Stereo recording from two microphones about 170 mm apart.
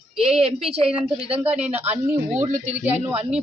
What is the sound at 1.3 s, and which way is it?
Speech, 10° right (ahead or behind).